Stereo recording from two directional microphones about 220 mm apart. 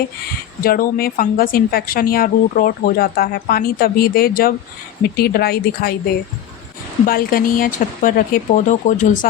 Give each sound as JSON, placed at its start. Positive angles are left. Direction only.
{"t": 0.6, "sound": "a woman's voice", "side_deg": 40}
{"t": 7.0, "sound": "speech", "side_deg": 40}